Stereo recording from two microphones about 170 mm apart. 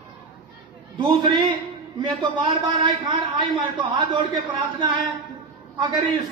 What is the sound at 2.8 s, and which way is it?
Speech, 30° right (ahead or behind).